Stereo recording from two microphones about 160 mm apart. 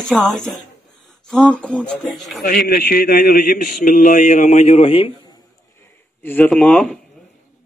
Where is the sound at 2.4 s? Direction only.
70° left (ahead or behind); by 5.1 s 35° left (ahead or behind).